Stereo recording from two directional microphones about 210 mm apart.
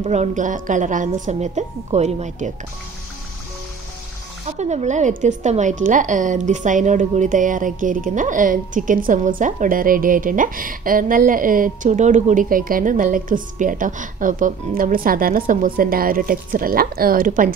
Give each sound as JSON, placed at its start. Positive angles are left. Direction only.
{"t": 0.0, "sound": "a woman's voice", "side_deg": -35}
{"t": 4.5, "sound": "a woman's voice", "side_deg": -30}